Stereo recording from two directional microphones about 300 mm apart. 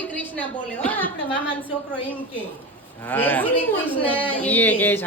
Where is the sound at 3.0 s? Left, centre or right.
Centre.